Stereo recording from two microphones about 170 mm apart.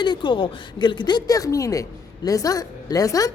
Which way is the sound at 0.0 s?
25° left (ahead or behind).